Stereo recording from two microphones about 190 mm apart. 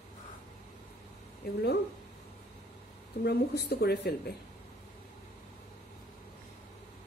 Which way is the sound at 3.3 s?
60° left (ahead or behind).